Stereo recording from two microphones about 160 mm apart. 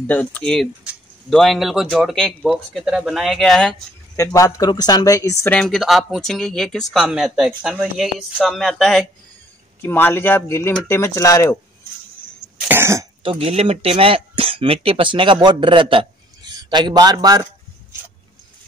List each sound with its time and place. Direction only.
0.0 s speech: 10° left (ahead or behind)
4.2 s speech: 20° left (ahead or behind); by 9.0 s centre (ahead or behind)
9.8 s speech: 15° left (ahead or behind)
12.6 s cough: 15° right (ahead or behind)
13.2 s a man's voice: 35° right (ahead or behind)